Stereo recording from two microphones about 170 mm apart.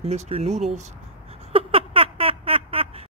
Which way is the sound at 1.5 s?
35° right (ahead or behind).